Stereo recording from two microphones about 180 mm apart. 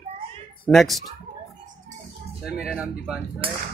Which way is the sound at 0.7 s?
Centre (ahead or behind).